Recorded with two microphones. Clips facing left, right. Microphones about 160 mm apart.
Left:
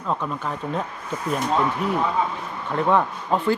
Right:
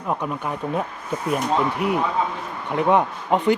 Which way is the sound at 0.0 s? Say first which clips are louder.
Right 1 dB; 15° right (ahead or behind).